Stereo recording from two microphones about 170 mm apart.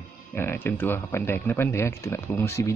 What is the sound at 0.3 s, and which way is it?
Speech, 10° left (ahead or behind).